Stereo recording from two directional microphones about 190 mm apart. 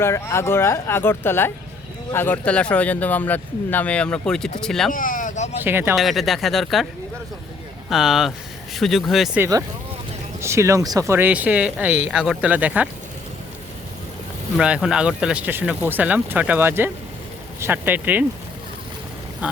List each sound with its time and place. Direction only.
0.0 s speech: 15° left (ahead or behind)
4.9 s a sound: 45° left (ahead or behind)
5.6 s speech: 10° right (ahead or behind)
6.0 s speech: centre (ahead or behind)
7.9 s speech: centre (ahead or behind)
9.4 s speech: 20° right (ahead or behind)
14.5 s speech: 5° right (ahead or behind)